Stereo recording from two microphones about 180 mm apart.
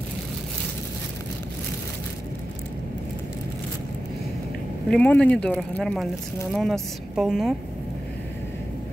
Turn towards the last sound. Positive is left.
turn(degrees=0)  # may be behind; listen again after turning